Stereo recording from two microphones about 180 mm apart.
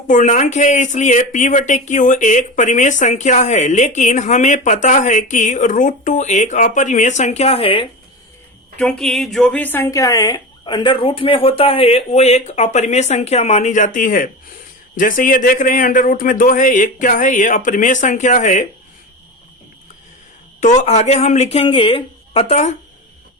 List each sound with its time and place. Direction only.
0.1 s speech: 45° left (ahead or behind)
8.8 s speech: 5° left (ahead or behind); by 18.6 s 45° left (ahead or behind)
20.6 s speech: 40° left (ahead or behind)